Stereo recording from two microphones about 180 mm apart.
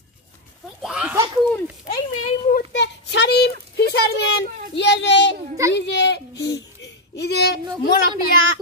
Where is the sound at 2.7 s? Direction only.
75° left (ahead or behind).